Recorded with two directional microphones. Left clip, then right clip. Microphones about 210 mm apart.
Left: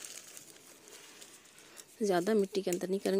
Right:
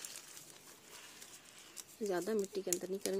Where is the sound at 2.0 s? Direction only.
40° left (ahead or behind).